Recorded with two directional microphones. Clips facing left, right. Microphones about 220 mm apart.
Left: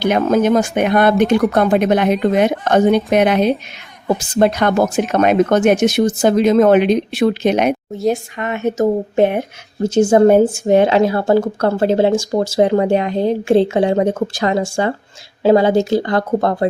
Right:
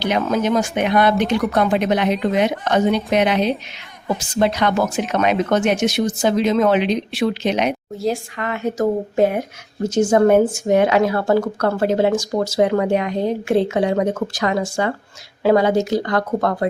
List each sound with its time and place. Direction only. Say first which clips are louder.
0.0 s speech: left 5 dB; 50° left (ahead or behind)
7.9 s speech: left 4 dB; 20° left (ahead or behind)